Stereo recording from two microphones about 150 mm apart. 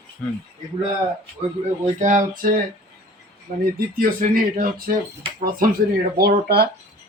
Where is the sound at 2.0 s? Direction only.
55° right (ahead or behind).